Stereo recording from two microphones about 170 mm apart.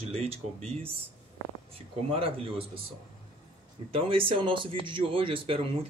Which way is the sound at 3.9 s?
30° right (ahead or behind).